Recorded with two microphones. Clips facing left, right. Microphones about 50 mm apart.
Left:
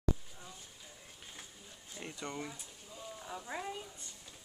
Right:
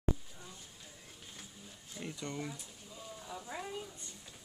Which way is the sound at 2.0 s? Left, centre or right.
Centre.